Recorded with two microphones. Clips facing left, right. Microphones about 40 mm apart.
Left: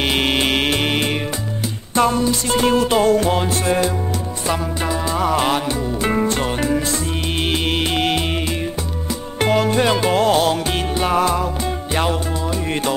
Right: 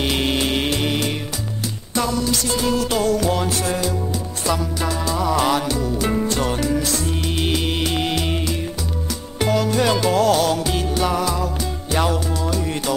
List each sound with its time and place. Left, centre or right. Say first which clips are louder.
0.0 s music: left 2 dB; left
9.4 s music: left 2 dB; left
11.9 s music: right 1 dB; left